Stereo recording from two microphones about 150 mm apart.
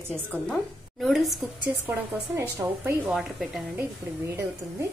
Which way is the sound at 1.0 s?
Centre (ahead or behind).